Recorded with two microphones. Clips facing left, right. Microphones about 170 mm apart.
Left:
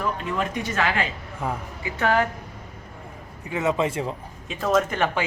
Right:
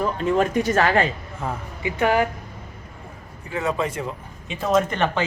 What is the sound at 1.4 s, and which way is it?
Speech, 10° left (ahead or behind).